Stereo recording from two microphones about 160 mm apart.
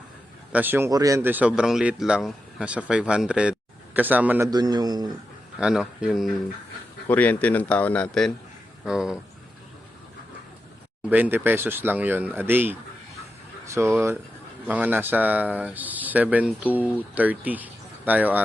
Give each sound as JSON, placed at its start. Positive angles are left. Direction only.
{"t": 0.5, "sound": "speech", "side_deg": -10}
{"t": 4.5, "sound": "speech", "side_deg": -25}
{"t": 5.5, "sound": "speech", "side_deg": -5}
{"t": 7.1, "sound": "speech", "side_deg": 10}
{"t": 11.1, "sound": "speech", "side_deg": -10}